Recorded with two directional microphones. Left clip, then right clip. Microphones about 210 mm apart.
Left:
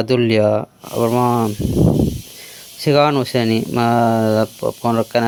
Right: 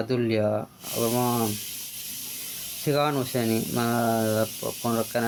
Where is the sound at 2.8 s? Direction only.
45° left (ahead or behind).